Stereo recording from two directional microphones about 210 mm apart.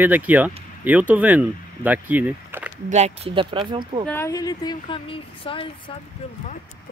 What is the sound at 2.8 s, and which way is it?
Speech, 30° right (ahead or behind).